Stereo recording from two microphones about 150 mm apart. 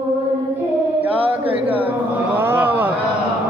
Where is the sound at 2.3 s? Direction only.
15° right (ahead or behind).